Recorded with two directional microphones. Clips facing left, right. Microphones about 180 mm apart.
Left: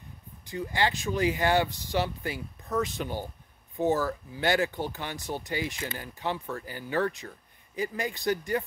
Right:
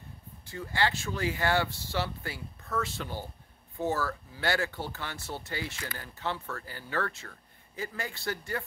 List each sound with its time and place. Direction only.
0.5 s speech: 15° left (ahead or behind)